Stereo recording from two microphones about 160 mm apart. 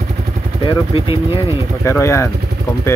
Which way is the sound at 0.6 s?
30° left (ahead or behind).